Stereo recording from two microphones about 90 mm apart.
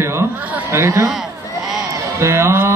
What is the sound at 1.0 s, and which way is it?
Bleat, 5° right (ahead or behind).